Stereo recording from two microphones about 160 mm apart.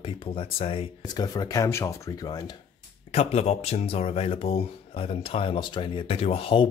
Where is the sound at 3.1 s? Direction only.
40° left (ahead or behind).